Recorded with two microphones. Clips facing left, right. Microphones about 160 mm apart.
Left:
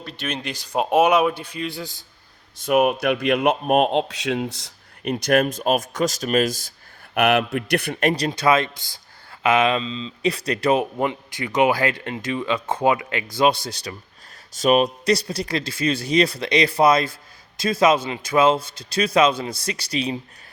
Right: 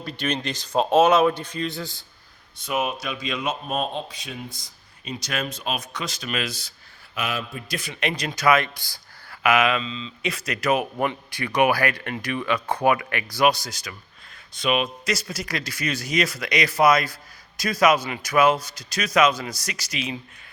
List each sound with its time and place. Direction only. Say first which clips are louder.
0.0 s speech: right 2 dB; centre (ahead or behind)
2.6 s a man's voice: left 9 dB; 60° left (ahead or behind); by 10.8 s 30° left (ahead or behind)
10.9 s speech: left 2 dB; 20° left (ahead or behind)
14.5 s a man's voice: left 6 dB; 40° left (ahead or behind)